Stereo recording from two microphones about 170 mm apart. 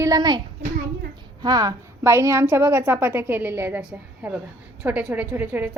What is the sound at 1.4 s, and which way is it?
A woman's voice, 25° right (ahead or behind).